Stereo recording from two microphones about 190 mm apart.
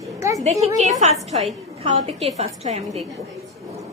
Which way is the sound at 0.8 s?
35° right (ahead or behind).